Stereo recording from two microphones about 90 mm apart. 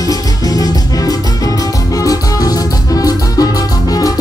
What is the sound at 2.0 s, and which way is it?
Music, 40° left (ahead or behind).